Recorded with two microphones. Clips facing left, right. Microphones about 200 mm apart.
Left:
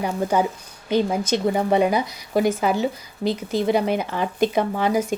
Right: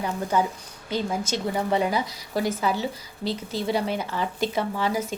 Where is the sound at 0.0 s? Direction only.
15° left (ahead or behind).